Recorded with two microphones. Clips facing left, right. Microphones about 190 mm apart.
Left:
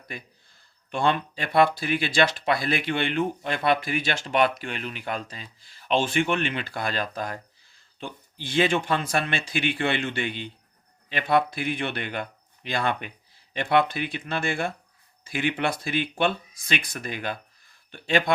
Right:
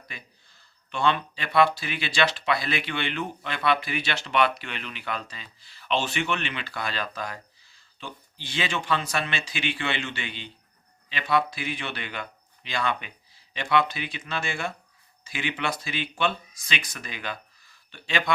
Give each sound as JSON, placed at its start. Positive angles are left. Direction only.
{"t": 0.1, "sound": "speech", "side_deg": 50}